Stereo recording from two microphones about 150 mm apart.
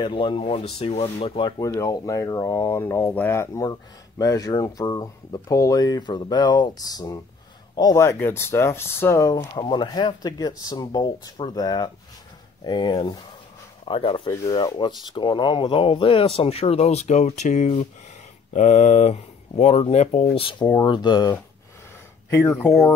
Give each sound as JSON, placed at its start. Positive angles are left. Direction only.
{"t": 0.0, "sound": "speech", "side_deg": 35}
{"t": 1.6, "sound": "speech", "side_deg": 25}
{"t": 14.3, "sound": "speech", "side_deg": 25}
{"t": 20.3, "sound": "speech", "side_deg": 35}